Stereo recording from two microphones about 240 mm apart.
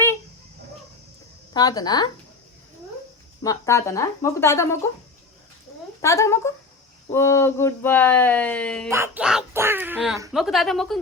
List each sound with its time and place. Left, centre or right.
1.5 s speech: centre
3.4 s speech: centre
6.0 s speech: centre
8.9 s a woman's voice: centre